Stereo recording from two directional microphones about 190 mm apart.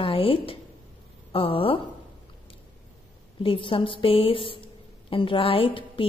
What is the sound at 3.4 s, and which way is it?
A woman's voice, 30° left (ahead or behind).